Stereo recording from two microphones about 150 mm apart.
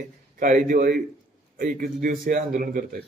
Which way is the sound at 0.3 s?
60° right (ahead or behind).